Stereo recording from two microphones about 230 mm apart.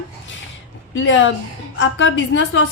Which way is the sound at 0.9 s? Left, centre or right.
Left.